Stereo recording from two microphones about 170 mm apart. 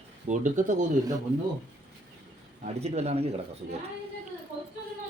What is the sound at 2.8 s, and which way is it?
Speech, 40° right (ahead or behind).